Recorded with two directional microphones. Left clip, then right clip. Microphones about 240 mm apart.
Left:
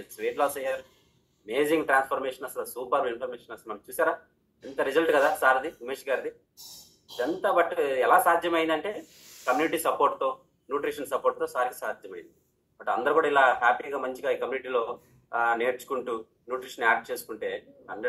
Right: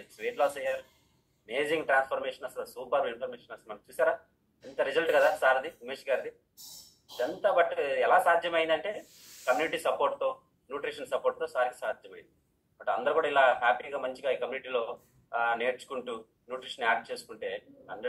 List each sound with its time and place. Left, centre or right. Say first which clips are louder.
0.2 s speech: left 2 dB; left